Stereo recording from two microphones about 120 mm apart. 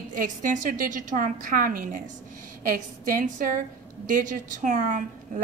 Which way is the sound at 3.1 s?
90° right.